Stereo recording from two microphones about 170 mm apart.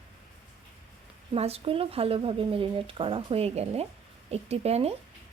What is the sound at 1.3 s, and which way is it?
Speech, 35° right (ahead or behind).